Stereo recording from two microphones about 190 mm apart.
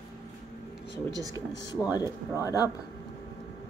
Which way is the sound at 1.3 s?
20° left (ahead or behind).